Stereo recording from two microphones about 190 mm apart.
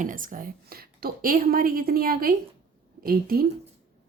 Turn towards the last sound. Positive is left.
turn(degrees=-50)  # may be behind; listen again after turning